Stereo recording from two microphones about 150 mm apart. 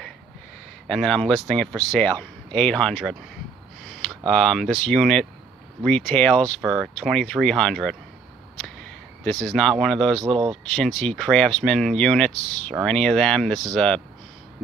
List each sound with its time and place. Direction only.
0.8 s speech: 5° left (ahead or behind)
3.9 s a sound: 5° left (ahead or behind)
4.3 s speech: centre (ahead or behind)
10.2 s speech: 35° right (ahead or behind)
10.7 s speech: centre (ahead or behind)